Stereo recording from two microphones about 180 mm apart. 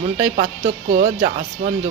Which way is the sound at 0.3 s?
35° right (ahead or behind).